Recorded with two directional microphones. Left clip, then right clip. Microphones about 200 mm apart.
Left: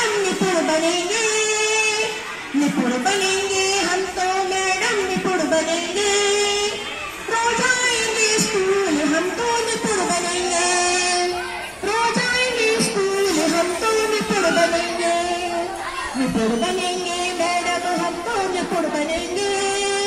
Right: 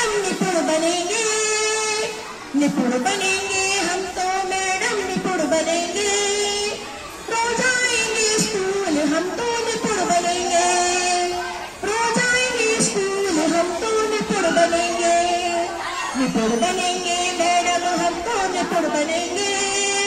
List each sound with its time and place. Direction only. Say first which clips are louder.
5.5 s music: even; 25° right (ahead or behind)
8.2 s music: left 2 dB; 20° right (ahead or behind)
10.7 s music: even; 20° right (ahead or behind)
14.1 s music: left 1 dB; 20° right (ahead or behind)